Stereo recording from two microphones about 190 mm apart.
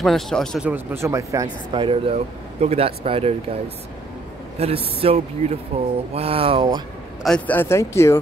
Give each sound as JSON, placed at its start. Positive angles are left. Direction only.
{"t": 0.0, "sound": "speech", "side_deg": 0}
{"t": 0.7, "sound": "speech", "side_deg": -10}
{"t": 4.6, "sound": "speech", "side_deg": -30}
{"t": 7.2, "sound": "speech", "side_deg": 5}